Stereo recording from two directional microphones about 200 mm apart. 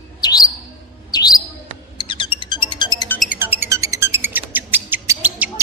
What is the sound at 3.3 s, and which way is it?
Bird, 10° right (ahead or behind).